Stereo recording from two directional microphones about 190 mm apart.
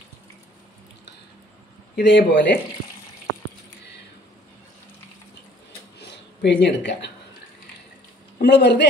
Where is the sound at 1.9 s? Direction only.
65° left (ahead or behind).